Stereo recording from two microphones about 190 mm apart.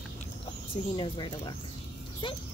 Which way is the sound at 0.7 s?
25° left (ahead or behind).